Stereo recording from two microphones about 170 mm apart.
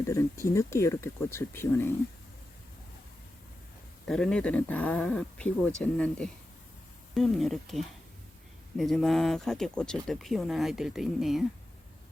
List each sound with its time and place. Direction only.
0.1 s speech: 15° left (ahead or behind)
4.0 s speech: 5° left (ahead or behind)